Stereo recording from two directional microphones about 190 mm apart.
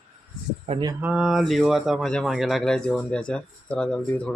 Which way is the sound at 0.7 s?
20° right (ahead or behind).